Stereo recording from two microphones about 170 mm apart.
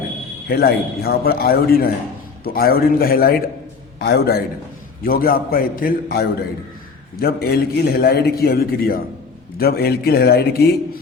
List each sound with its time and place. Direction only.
0.4 s a man's voice: 65° left (ahead or behind)